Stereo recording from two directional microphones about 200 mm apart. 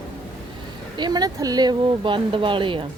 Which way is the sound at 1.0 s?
20° right (ahead or behind).